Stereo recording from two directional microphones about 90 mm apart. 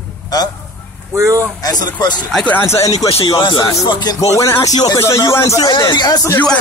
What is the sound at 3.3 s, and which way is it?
Speech, 60° left (ahead or behind).